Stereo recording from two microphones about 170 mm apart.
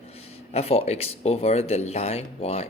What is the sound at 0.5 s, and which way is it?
Speech, 35° left (ahead or behind).